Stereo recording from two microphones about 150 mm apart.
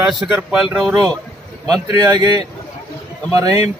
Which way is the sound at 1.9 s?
25° right (ahead or behind).